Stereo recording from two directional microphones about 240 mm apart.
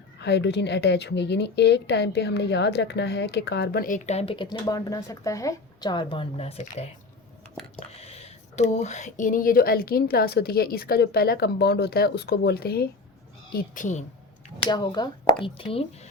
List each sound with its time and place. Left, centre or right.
0.2 s a woman's voice: left
7.9 s speech: left
14.7 s a woman's voice: centre